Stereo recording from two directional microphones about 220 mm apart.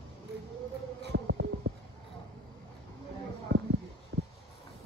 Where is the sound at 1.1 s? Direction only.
60° right (ahead or behind).